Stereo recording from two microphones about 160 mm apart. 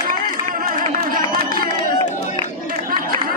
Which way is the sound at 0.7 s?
60° right (ahead or behind).